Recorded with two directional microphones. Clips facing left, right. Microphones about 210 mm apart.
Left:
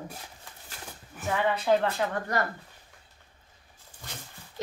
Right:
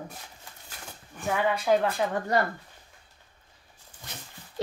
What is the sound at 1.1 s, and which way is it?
Speech, 5° left (ahead or behind).